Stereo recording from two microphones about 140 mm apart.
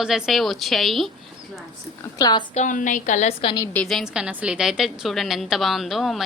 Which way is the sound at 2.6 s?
65° left (ahead or behind).